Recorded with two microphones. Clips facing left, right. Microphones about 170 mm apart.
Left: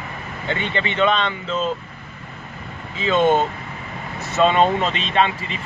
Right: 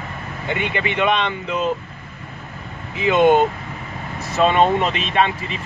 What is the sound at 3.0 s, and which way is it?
Speech, 15° right (ahead or behind).